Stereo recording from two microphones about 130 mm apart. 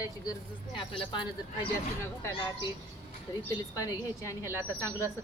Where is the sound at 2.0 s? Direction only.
15° left (ahead or behind).